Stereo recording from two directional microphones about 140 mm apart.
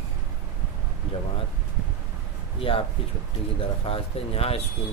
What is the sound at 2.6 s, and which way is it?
Speech, 40° left (ahead or behind).